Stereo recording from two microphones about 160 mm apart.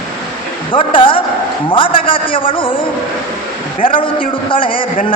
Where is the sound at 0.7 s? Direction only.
35° left (ahead or behind).